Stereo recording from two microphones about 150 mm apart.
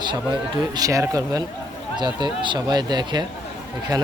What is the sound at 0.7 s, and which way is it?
Speech, 25° right (ahead or behind).